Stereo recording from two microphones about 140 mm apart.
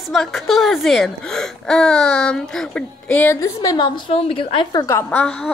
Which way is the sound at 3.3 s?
25° left (ahead or behind).